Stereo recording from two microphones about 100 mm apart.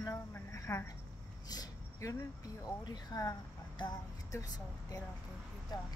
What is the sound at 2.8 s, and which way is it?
Speech, 40° left (ahead or behind).